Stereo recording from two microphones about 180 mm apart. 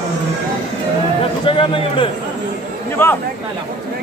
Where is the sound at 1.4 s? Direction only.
30° left (ahead or behind).